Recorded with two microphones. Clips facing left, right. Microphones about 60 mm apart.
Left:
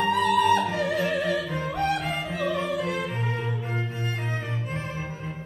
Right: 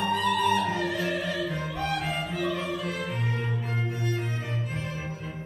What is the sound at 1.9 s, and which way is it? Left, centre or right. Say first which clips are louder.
Music: left 2 dB; left.